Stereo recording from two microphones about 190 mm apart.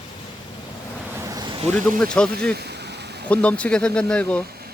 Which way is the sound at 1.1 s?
15° right (ahead or behind).